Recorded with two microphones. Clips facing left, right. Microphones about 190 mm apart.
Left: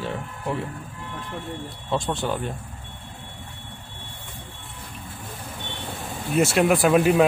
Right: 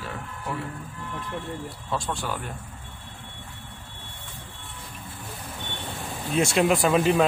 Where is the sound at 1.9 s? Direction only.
20° left (ahead or behind).